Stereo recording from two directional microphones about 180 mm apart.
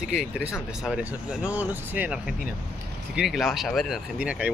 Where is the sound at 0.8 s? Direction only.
5° right (ahead or behind).